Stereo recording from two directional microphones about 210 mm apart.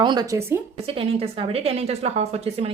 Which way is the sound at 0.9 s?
25° right (ahead or behind).